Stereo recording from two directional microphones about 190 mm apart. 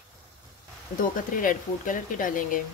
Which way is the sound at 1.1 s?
45° left (ahead or behind).